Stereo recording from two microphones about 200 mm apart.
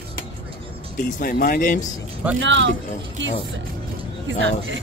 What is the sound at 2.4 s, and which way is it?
Speech, 65° right (ahead or behind).